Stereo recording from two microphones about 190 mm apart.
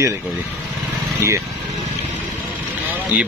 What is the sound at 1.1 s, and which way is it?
Speech, 15° right (ahead or behind).